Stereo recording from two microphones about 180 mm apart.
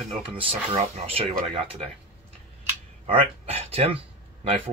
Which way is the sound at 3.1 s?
30° right (ahead or behind).